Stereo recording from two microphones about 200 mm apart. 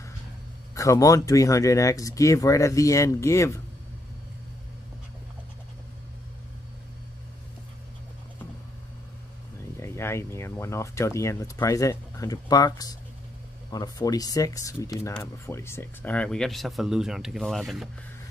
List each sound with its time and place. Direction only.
0.7 s speech: 15° left (ahead or behind)
9.8 s speech: 15° left (ahead or behind)